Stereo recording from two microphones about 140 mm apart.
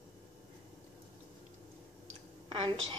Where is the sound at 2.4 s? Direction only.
40° right (ahead or behind).